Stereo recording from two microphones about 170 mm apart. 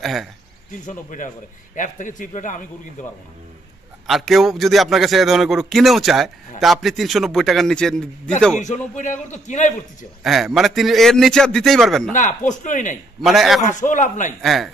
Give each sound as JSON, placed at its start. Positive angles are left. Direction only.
{"t": 0.0, "sound": "a man's voice", "side_deg": 0}
{"t": 0.8, "sound": "a man's voice", "side_deg": 50}
{"t": 4.1, "sound": "a man's voice", "side_deg": 0}
{"t": 8.6, "sound": "a man's voice", "side_deg": 45}
{"t": 10.2, "sound": "a man's voice", "side_deg": 0}
{"t": 12.1, "sound": "a man's voice", "side_deg": 50}
{"t": 13.2, "sound": "a man's voice", "side_deg": 0}
{"t": 13.7, "sound": "a man's voice", "side_deg": 50}
{"t": 14.4, "sound": "a man's voice", "side_deg": 0}